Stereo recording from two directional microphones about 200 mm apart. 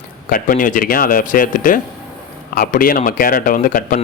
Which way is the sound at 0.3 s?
45° left (ahead or behind).